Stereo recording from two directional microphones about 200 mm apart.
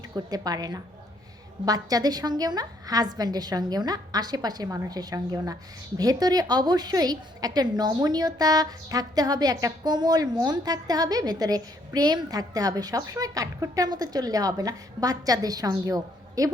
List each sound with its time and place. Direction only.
0.1 s a woman's voice: 20° right (ahead or behind)